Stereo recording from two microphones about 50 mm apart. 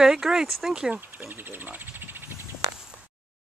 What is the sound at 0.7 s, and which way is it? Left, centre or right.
Speech, centre.